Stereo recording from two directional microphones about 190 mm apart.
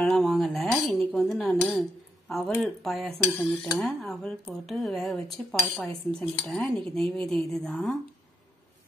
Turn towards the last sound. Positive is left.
turn(degrees=5)  # may be behind; listen again after turning